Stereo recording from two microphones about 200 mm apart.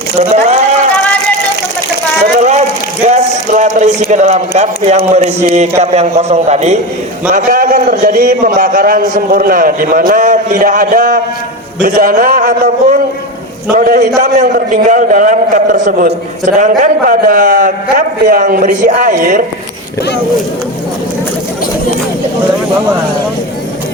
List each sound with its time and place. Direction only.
0.2 s speech: 40° right (ahead or behind)
2.4 s a man's voice: 35° right (ahead or behind)